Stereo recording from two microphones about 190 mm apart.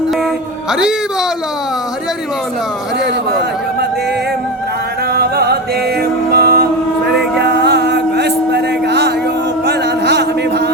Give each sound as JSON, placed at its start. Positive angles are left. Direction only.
{"t": 0.7, "sound": "a woman's voice", "side_deg": -5}
{"t": 5.1, "sound": "music", "side_deg": -55}
{"t": 6.3, "sound": "mantra", "side_deg": -55}
{"t": 7.2, "sound": "a sound", "side_deg": -60}